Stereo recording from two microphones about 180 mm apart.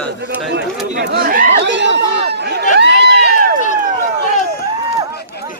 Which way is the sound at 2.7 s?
70° right (ahead or behind).